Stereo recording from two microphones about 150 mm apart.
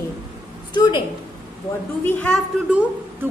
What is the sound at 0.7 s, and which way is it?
Speech, 30° left (ahead or behind).